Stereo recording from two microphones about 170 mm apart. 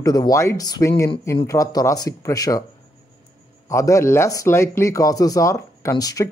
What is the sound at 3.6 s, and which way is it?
A man's voice, 15° left (ahead or behind).